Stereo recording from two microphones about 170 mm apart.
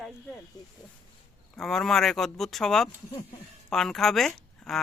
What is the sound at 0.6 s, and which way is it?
Speech, 25° left (ahead or behind).